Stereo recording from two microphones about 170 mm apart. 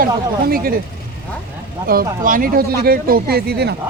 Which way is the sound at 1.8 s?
60° right (ahead or behind).